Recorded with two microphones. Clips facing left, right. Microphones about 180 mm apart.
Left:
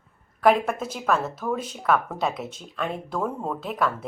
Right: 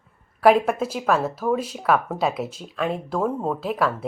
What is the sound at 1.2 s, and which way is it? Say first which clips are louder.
Speech: right 5 dB; 30° right (ahead or behind).